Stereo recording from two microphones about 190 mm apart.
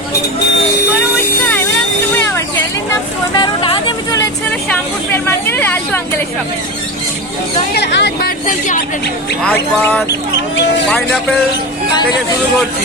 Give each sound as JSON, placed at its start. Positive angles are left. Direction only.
{"t": 2.1, "sound": "vehicle", "side_deg": 15}
{"t": 5.1, "sound": "speech", "side_deg": 10}
{"t": 7.7, "sound": "speech", "side_deg": 65}
{"t": 9.5, "sound": "speech", "side_deg": 10}